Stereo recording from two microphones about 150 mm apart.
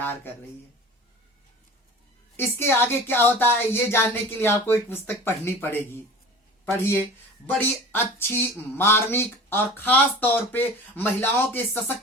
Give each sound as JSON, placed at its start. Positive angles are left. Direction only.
{"t": 2.3, "sound": "speech", "side_deg": 15}